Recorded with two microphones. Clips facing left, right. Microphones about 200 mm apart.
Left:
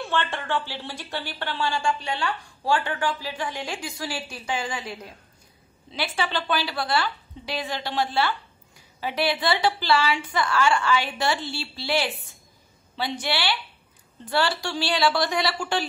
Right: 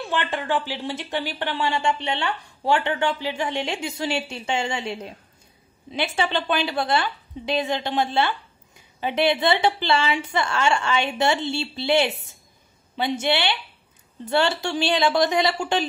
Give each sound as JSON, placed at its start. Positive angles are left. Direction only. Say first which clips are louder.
{"t": 0.0, "sound": "speech", "louder": "right 1 dB", "side_deg": -15}